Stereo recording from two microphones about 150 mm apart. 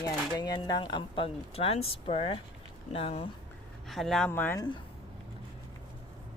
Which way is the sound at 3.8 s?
Centre (ahead or behind).